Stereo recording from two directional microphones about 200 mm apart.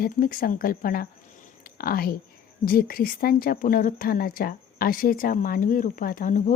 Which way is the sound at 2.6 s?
45° left (ahead or behind).